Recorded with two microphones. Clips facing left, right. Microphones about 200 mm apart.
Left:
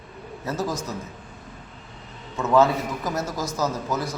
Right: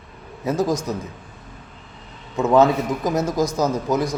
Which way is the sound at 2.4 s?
15° right (ahead or behind).